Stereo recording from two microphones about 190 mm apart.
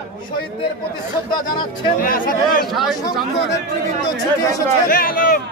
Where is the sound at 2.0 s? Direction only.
50° left (ahead or behind).